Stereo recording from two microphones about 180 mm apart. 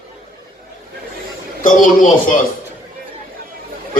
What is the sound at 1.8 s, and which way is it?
Speech, 45° left (ahead or behind).